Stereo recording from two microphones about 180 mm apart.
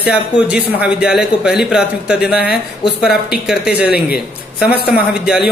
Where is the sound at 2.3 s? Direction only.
60° left (ahead or behind).